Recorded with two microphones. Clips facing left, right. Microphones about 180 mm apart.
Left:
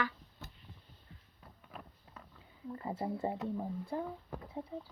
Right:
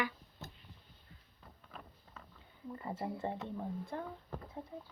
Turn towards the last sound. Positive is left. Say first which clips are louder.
# left 4 dB
turn(degrees=5)  # may be behind; listen again after turning